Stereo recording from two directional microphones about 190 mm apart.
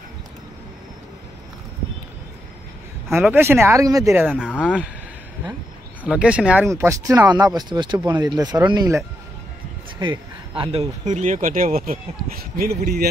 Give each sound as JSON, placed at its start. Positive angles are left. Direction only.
{"t": 3.1, "sound": "speech", "side_deg": -10}
{"t": 4.4, "sound": "speech", "side_deg": 10}
{"t": 6.0, "sound": "speech", "side_deg": -5}
{"t": 10.6, "sound": "speech", "side_deg": -30}